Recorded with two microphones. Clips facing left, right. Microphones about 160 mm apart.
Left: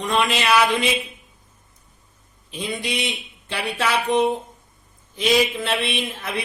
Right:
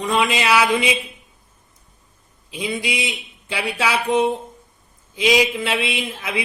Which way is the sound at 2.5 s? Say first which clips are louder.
Right 2 dB; 10° right (ahead or behind).